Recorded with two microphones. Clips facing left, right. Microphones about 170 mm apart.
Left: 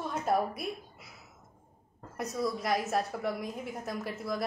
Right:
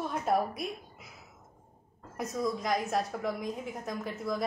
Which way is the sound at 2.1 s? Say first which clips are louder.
Even; 5° left (ahead or behind).